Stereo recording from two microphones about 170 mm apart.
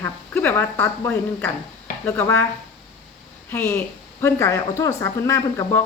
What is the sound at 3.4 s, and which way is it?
A woman's voice, 15° left (ahead or behind).